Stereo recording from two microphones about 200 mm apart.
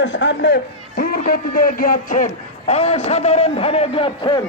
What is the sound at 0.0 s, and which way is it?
A man's voice, 65° left (ahead or behind).